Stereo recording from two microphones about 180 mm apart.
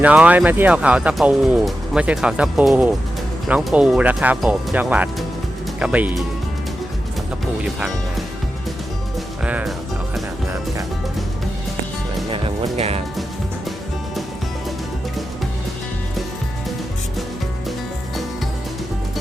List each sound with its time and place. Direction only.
0.0 s speech: 10° right (ahead or behind)
7.6 s speech: 5° right (ahead or behind)
9.4 s music: 5° right (ahead or behind)
12.7 s music: 35° right (ahead or behind)